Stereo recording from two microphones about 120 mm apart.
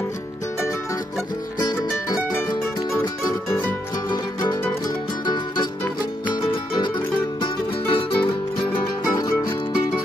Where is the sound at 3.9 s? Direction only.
35° left (ahead or behind).